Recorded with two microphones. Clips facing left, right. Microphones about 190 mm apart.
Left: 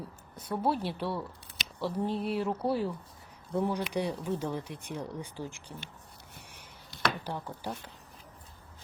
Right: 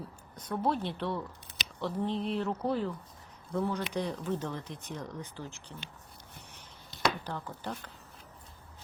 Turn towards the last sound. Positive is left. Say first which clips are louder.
# left 1 dB
turn(degrees=10)  # may be behind; listen again after turning